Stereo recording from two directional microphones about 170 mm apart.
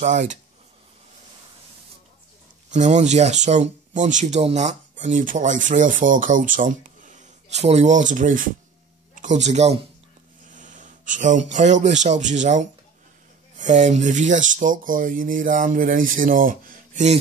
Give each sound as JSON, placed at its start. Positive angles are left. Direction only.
{"t": 0.0, "sound": "speech", "side_deg": -45}
{"t": 2.7, "sound": "speech", "side_deg": -45}